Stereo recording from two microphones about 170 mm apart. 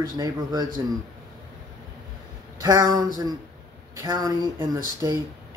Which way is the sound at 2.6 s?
25° right (ahead or behind).